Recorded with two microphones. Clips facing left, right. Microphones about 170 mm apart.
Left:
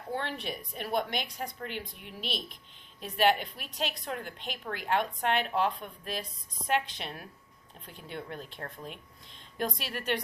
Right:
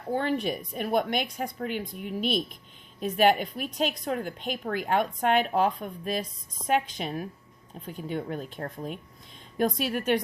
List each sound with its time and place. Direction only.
0.1 s a woman's voice: 45° right (ahead or behind)